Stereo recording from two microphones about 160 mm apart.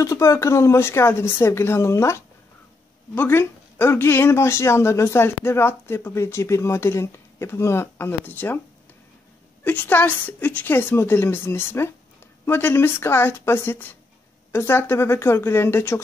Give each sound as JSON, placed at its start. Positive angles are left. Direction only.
{"t": 0.0, "sound": "speech", "side_deg": 20}
{"t": 9.7, "sound": "speech", "side_deg": 10}